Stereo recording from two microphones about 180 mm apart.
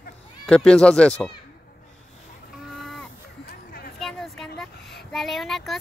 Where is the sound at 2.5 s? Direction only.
Centre (ahead or behind).